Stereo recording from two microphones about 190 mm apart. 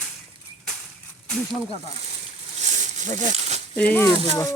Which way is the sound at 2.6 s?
40° right (ahead or behind).